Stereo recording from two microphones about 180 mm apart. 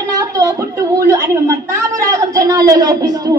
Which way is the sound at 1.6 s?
15° right (ahead or behind).